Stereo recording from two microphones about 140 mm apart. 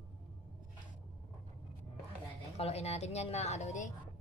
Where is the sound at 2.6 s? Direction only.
50° left (ahead or behind).